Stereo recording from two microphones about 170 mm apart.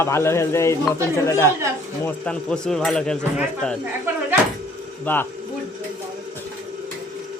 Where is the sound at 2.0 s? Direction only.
5° left (ahead or behind).